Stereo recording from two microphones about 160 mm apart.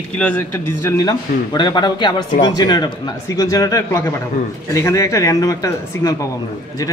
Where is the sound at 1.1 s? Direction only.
25° left (ahead or behind).